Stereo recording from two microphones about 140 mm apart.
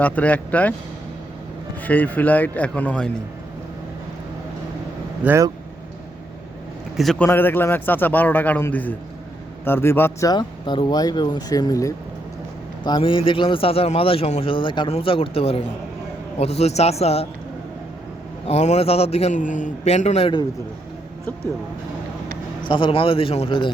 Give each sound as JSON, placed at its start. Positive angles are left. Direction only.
{"t": 0.0, "sound": "a man's voice", "side_deg": 10}
{"t": 1.8, "sound": "a man's voice", "side_deg": 10}
{"t": 5.2, "sound": "speech", "side_deg": -15}
{"t": 6.9, "sound": "a man's voice", "side_deg": 0}
{"t": 7.2, "sound": "a man's voice", "side_deg": 15}
{"t": 12.8, "sound": "a man's voice", "side_deg": 35}
{"t": 18.4, "sound": "a man's voice", "side_deg": 50}
{"t": 22.6, "sound": "a man's voice", "side_deg": 35}